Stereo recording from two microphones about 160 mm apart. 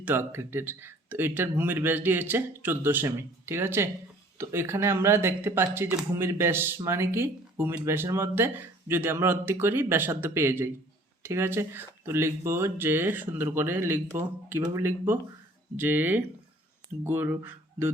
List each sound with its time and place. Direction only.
0.0 s speech: 15° right (ahead or behind)